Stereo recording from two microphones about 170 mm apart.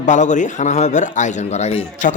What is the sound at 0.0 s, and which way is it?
A man's voice, 45° left (ahead or behind).